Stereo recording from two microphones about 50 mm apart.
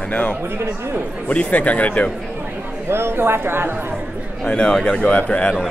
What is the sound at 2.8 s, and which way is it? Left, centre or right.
Speech, right.